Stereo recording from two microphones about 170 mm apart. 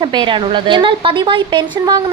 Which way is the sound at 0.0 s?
30° right (ahead or behind).